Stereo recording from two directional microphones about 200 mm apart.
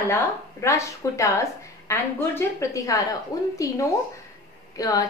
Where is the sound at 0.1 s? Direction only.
15° left (ahead or behind).